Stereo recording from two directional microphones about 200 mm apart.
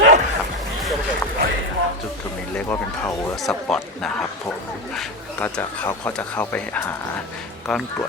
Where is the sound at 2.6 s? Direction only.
10° left (ahead or behind).